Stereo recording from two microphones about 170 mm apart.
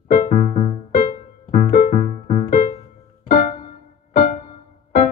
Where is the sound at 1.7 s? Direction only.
55° left (ahead or behind).